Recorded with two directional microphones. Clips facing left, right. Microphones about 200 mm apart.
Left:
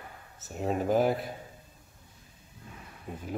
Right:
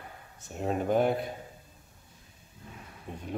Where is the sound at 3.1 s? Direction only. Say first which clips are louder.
Left 1 dB; 5° left (ahead or behind).